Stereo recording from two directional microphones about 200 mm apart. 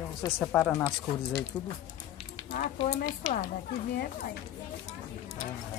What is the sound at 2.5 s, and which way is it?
Speech, 30° left (ahead or behind).